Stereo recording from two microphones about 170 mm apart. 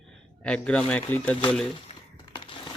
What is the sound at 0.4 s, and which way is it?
Speech, 5° left (ahead or behind).